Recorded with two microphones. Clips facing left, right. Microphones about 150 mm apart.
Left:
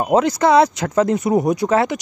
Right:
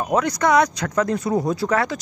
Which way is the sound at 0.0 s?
25° left (ahead or behind).